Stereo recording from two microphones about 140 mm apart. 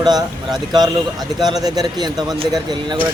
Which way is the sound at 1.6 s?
30° right (ahead or behind).